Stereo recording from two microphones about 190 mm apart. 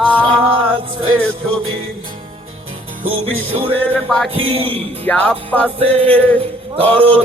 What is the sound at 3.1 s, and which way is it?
Music, 30° right (ahead or behind).